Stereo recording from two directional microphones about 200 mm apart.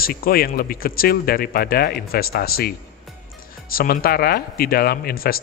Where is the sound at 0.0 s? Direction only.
45° left (ahead or behind).